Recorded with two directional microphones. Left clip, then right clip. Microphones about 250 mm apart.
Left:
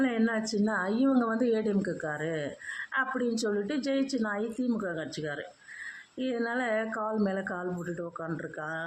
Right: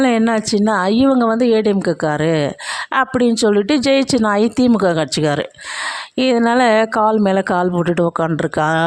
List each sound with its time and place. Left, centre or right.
0.0 s speech: right